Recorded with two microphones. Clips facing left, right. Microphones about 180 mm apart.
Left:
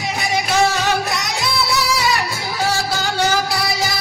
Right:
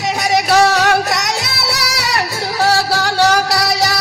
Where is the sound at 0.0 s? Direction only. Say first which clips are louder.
Right 5 dB; 75° right (ahead or behind).